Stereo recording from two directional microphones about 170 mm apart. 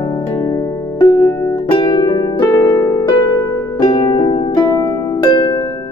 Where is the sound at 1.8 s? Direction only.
25° left (ahead or behind).